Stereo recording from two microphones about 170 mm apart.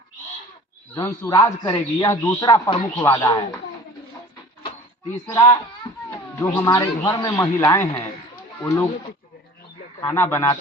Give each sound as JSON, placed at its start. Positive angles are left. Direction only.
{"t": 0.9, "sound": "a man's voice", "side_deg": 20}
{"t": 2.4, "sound": "a man's voice", "side_deg": 25}
{"t": 5.3, "sound": "a man's voice", "side_deg": 20}
{"t": 10.0, "sound": "a man's voice", "side_deg": 15}